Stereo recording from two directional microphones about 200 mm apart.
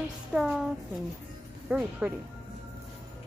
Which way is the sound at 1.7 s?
5° right (ahead or behind).